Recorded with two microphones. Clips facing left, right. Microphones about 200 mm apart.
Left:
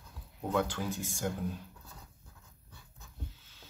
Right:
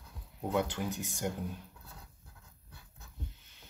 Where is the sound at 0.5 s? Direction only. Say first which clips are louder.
Left 1 dB; 15° right (ahead or behind).